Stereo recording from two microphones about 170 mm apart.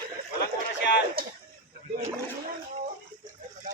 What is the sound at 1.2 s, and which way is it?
Speech, 60° right (ahead or behind).